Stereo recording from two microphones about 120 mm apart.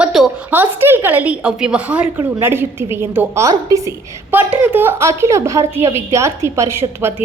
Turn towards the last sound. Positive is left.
turn(degrees=-20)  # may be behind; listen again after turning